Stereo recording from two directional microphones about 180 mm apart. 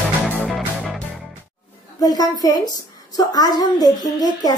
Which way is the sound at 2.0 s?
20° left (ahead or behind).